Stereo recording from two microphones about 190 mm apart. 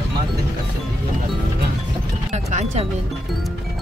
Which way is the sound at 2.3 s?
35° right (ahead or behind).